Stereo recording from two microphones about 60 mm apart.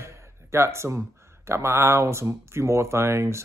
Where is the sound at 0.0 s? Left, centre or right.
Right.